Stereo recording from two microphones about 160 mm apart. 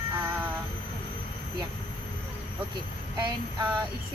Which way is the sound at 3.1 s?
25° right (ahead or behind).